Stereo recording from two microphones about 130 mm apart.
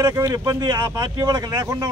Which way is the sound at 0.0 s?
20° right (ahead or behind).